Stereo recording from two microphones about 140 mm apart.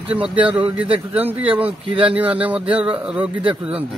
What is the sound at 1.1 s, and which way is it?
Speech, 15° right (ahead or behind).